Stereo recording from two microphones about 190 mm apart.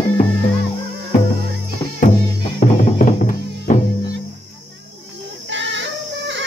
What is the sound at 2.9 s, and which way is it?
Music, 40° left (ahead or behind).